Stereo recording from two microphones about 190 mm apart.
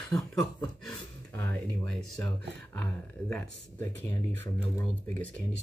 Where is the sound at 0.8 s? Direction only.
10° left (ahead or behind).